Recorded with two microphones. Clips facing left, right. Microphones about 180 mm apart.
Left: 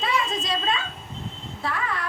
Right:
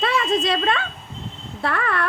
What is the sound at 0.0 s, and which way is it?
A woman's voice, 65° right (ahead or behind).